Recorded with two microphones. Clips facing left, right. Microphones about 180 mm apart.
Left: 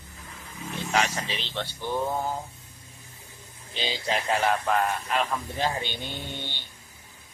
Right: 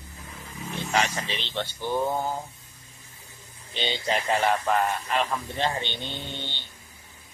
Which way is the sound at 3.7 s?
Centre (ahead or behind).